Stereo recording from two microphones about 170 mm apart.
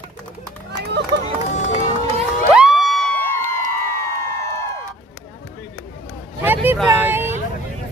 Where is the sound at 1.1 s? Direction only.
80° right.